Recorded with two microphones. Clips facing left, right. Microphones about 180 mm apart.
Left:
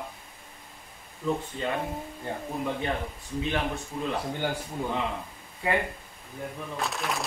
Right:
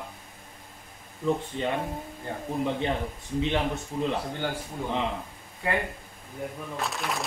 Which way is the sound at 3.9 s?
25° right (ahead or behind).